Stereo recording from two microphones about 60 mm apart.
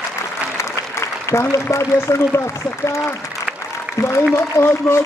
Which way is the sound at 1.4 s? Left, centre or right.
Left.